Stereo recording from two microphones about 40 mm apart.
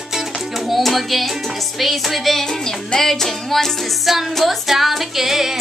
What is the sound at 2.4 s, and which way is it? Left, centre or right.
Music, centre.